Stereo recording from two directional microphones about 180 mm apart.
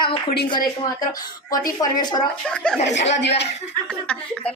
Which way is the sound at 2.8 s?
80° left.